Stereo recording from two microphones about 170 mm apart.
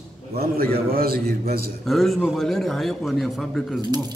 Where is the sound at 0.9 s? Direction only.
60° right (ahead or behind).